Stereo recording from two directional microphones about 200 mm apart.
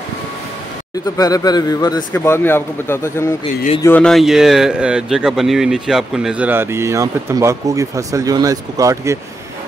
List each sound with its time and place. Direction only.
1.1 s a man's voice: 20° left (ahead or behind); by 9.2 s 15° right (ahead or behind)